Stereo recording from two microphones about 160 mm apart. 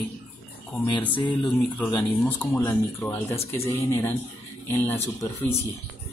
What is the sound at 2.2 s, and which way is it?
Speech, 15° left (ahead or behind).